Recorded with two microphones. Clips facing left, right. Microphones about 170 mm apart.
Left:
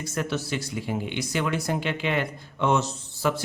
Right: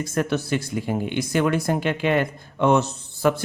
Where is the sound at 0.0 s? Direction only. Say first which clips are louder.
Right 5 dB; 50° right (ahead or behind).